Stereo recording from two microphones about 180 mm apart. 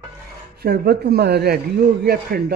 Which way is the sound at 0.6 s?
65° right (ahead or behind).